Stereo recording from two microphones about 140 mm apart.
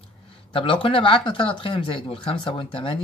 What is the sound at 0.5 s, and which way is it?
Speech, 40° left (ahead or behind).